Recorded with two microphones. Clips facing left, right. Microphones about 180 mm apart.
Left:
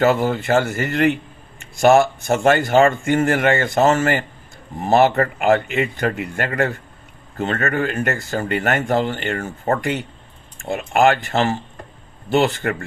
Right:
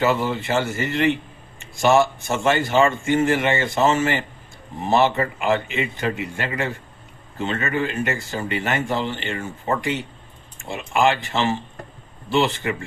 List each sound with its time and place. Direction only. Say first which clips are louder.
0.0 s speech: left 4 dB; 50° left (ahead or behind)